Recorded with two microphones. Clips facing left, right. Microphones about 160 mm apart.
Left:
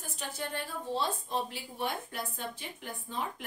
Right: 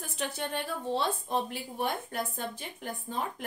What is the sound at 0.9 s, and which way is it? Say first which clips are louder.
A woman's voice: right 3 dB; 55° right (ahead or behind).